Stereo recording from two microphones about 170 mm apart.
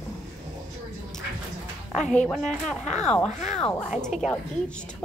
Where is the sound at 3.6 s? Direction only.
5° left (ahead or behind).